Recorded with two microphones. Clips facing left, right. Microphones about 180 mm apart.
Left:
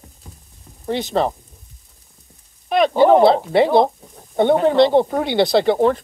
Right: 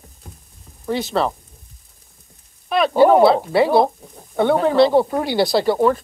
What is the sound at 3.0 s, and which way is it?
A woman's voice, 20° left (ahead or behind).